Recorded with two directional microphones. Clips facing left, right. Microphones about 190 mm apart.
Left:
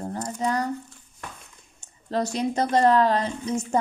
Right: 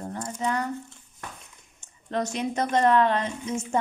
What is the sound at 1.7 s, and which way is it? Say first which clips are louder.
A woman's voice: left 2 dB; 35° left (ahead or behind).